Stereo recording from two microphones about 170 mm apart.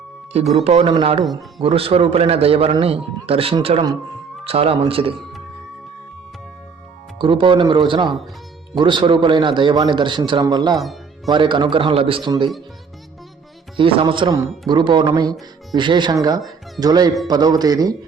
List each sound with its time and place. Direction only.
0.6 s a man's voice: 35° right (ahead or behind)
1.2 s speech: centre (ahead or behind)
1.6 s a man's voice: 35° right (ahead or behind)
7.2 s a man's voice: 30° right (ahead or behind)
13.7 s a man's voice: 30° right (ahead or behind)